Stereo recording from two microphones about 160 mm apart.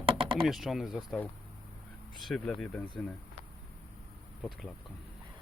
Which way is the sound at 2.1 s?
Centre (ahead or behind).